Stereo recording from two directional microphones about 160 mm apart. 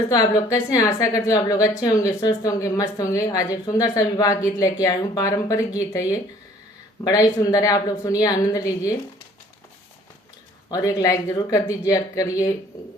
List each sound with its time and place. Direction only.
0.1 s a woman's voice: 20° left (ahead or behind)
10.7 s a woman's voice: 20° left (ahead or behind)